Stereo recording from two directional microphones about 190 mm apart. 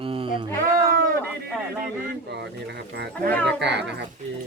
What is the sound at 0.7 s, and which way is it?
Sheep, 50° right (ahead or behind).